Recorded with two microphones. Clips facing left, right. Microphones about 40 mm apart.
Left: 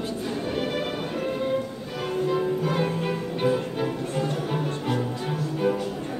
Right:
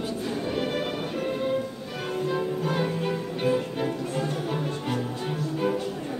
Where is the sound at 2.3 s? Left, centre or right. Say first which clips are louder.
Left 2 dB; centre.